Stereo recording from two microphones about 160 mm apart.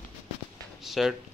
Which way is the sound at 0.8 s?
Centre (ahead or behind).